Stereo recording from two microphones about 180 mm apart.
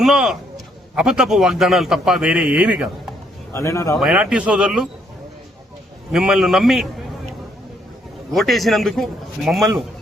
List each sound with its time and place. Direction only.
0.0 s a man's voice: 5° right (ahead or behind)
3.5 s speech: 15° left (ahead or behind)
3.9 s a man's voice: 5° right (ahead or behind)
6.1 s a man's voice: 5° right (ahead or behind)
8.3 s a man's voice: centre (ahead or behind)